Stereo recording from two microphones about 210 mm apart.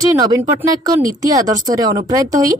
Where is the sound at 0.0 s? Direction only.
20° right (ahead or behind).